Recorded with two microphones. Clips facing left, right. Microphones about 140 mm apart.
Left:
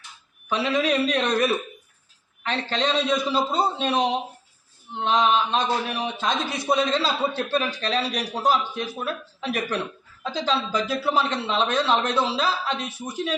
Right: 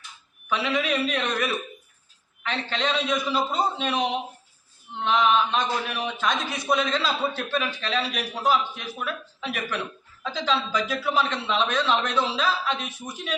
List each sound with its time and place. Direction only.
0.4 s speech: 35° left (ahead or behind)